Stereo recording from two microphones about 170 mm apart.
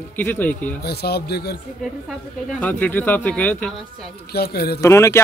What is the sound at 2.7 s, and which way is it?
A man's voice, 10° left (ahead or behind).